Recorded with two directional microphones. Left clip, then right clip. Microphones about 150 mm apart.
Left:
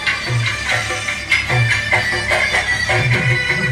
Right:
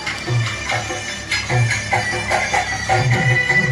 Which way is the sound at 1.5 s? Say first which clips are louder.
Left 4 dB; 20° left (ahead or behind).